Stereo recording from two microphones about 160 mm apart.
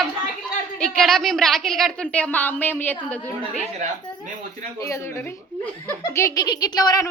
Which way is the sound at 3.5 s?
45° right (ahead or behind).